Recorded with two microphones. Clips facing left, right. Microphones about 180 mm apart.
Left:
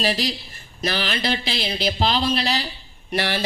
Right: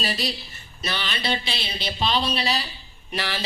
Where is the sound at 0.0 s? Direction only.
90° left.